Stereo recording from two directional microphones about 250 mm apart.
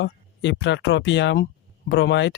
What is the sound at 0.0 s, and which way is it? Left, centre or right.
Speech, left.